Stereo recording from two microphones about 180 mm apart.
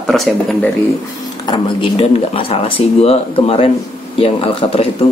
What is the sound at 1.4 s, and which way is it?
Speech, 25° left (ahead or behind).